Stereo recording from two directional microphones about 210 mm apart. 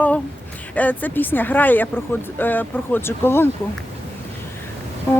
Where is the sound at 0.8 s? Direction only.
10° left (ahead or behind).